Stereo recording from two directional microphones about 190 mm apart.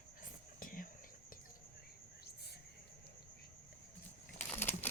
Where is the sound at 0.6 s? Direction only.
45° left (ahead or behind).